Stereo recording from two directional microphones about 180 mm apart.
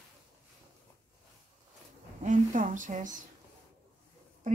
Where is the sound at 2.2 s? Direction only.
45° right (ahead or behind).